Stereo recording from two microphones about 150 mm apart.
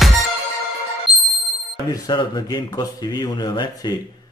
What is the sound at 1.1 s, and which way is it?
Ding, 5° right (ahead or behind).